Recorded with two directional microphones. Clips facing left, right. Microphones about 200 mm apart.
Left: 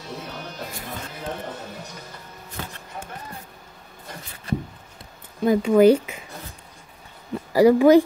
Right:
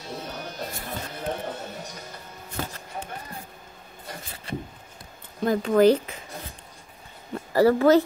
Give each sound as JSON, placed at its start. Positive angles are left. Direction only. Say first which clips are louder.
{"t": 2.6, "sound": "music", "louder": "right 3 dB", "side_deg": -40}
{"t": 5.4, "sound": "speech", "louder": "left 3 dB", "side_deg": 10}
{"t": 7.5, "sound": "speech", "louder": "left 4 dB", "side_deg": 15}